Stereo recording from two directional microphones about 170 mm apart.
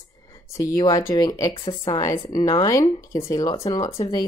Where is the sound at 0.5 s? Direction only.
15° left (ahead or behind).